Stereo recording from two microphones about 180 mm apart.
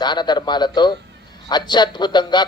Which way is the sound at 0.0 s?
25° left (ahead or behind).